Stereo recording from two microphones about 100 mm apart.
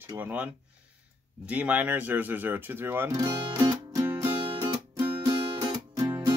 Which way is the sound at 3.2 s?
50° right (ahead or behind).